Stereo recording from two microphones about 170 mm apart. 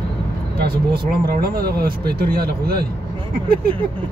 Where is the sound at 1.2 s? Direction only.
60° right (ahead or behind).